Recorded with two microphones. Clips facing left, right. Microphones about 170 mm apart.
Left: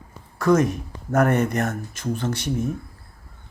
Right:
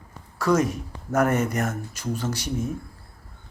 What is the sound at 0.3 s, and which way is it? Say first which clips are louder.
Speech: left 3 dB; 55° left (ahead or behind).